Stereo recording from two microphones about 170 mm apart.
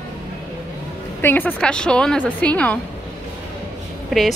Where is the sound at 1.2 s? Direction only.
10° left (ahead or behind).